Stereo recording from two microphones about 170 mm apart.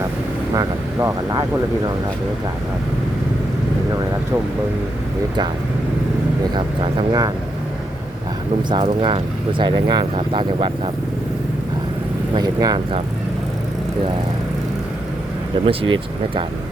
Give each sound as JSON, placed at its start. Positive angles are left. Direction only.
{"t": 0.5, "sound": "speech", "side_deg": -20}
{"t": 6.5, "sound": "speech", "side_deg": -25}
{"t": 8.7, "sound": "speech", "side_deg": -30}
{"t": 12.3, "sound": "speech", "side_deg": -25}
{"t": 15.5, "sound": "speech", "side_deg": -30}